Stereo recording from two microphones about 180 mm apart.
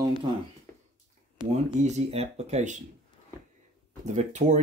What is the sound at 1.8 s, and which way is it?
Speech, 35° right (ahead or behind).